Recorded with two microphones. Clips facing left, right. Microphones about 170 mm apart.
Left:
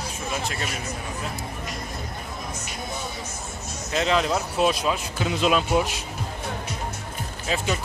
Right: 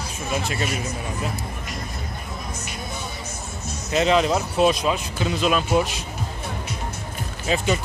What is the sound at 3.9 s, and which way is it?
Speech, 5° right (ahead or behind).